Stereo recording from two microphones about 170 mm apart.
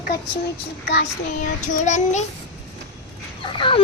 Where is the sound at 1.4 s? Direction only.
45° left (ahead or behind).